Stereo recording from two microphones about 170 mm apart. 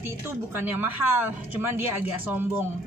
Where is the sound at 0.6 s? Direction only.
10° right (ahead or behind).